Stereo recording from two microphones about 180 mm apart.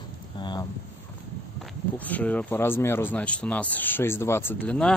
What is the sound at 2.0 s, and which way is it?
Speech, 10° left (ahead or behind).